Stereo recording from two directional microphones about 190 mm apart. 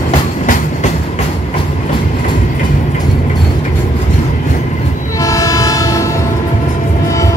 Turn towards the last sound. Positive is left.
turn(degrees=15)  # may be behind; listen again after turning